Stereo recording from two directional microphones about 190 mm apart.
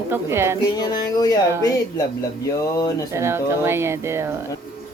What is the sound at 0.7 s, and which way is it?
Speech, 20° left (ahead or behind).